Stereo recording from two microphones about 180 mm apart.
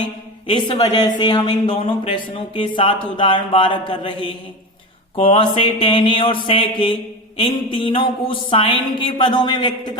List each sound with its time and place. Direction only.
0.4 s speech: 25° left (ahead or behind)